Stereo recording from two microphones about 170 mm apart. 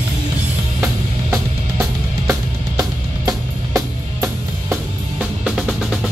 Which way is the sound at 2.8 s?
20° right (ahead or behind).